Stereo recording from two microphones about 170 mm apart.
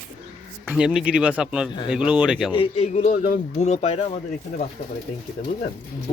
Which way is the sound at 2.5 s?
35° left (ahead or behind).